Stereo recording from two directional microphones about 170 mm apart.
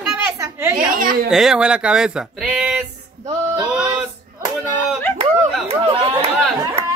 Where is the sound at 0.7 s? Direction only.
50° right (ahead or behind).